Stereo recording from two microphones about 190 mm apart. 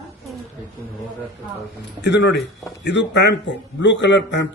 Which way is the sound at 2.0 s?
65° left (ahead or behind).